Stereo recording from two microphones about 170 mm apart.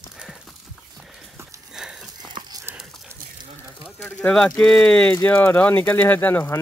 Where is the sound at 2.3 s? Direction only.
20° right (ahead or behind).